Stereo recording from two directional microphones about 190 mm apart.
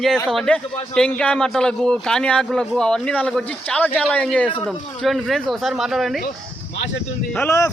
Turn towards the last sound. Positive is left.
turn(degrees=15)  # may be behind; listen again after turning